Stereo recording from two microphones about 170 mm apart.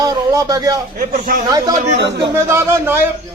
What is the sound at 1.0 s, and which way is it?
Speech, 60° right (ahead or behind).